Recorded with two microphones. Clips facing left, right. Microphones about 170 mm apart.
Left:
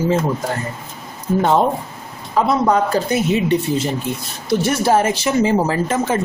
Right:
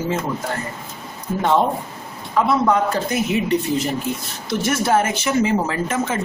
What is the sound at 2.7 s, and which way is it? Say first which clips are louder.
A woman's voice: left 2 dB; 25° left (ahead or behind).